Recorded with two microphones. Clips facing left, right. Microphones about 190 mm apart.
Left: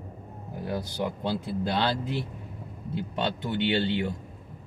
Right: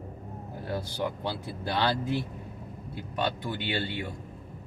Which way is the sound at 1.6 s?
20° left (ahead or behind).